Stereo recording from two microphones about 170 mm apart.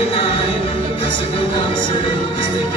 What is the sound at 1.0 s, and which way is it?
Music, 30° left (ahead or behind).